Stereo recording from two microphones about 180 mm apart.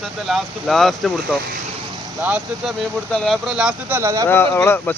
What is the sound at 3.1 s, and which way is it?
Speech, 5° left (ahead or behind).